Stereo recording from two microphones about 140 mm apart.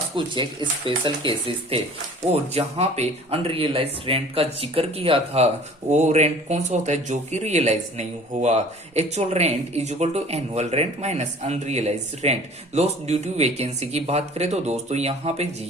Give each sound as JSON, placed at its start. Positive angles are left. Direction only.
{"t": 0.3, "sound": "speech", "side_deg": -35}
{"t": 5.9, "sound": "speech", "side_deg": -55}